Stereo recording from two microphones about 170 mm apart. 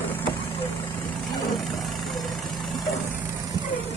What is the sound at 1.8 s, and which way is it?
Vehicle, centre (ahead or behind).